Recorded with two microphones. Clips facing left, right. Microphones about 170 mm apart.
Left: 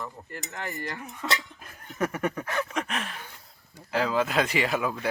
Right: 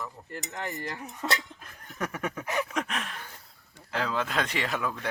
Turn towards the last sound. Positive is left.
turn(degrees=10)  # may be behind; listen again after turning